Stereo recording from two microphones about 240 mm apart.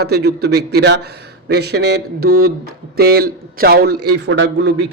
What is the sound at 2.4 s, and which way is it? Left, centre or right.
A man's voice, right.